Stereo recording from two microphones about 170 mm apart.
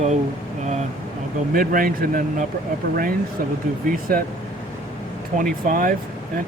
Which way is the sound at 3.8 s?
60° right (ahead or behind).